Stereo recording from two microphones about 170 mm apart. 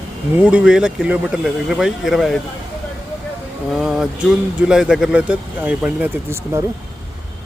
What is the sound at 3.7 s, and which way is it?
Speech, 5° right (ahead or behind).